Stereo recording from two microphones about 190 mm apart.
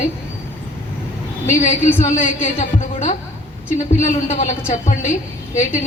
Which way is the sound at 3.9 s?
40° left (ahead or behind).